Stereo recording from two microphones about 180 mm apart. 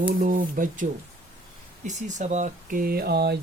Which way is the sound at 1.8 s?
40° right (ahead or behind).